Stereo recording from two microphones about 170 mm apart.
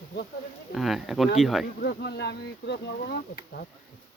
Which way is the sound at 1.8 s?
70° left (ahead or behind).